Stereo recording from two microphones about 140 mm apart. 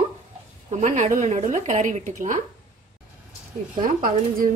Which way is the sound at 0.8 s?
60° right (ahead or behind).